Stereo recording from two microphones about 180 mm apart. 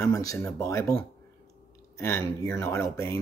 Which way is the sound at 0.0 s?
20° left (ahead or behind).